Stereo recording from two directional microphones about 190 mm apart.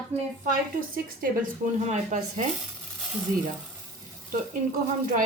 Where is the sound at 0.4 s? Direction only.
50° right (ahead or behind).